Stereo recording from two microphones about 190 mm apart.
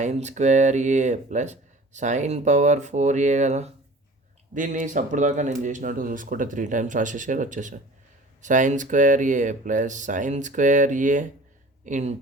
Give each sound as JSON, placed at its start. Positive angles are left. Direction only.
{"t": 0.0, "sound": "speech", "side_deg": -35}